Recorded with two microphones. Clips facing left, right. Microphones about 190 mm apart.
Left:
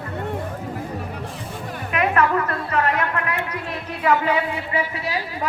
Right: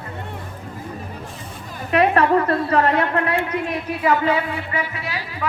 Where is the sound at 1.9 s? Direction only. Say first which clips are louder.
Right 4 dB; 35° right (ahead or behind).